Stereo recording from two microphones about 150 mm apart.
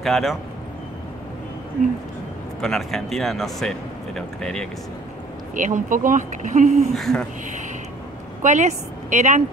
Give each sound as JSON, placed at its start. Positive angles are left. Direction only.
{"t": 0.0, "sound": "speech", "side_deg": 0}
{"t": 2.6, "sound": "speech", "side_deg": 0}
{"t": 5.5, "sound": "speech", "side_deg": -60}
{"t": 7.0, "sound": "speech", "side_deg": 0}
{"t": 8.4, "sound": "a woman's voice", "side_deg": -55}